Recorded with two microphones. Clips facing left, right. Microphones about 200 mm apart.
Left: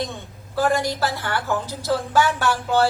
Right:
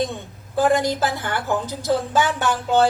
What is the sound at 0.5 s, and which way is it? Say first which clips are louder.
A woman's voice: right 3 dB; 20° right (ahead or behind).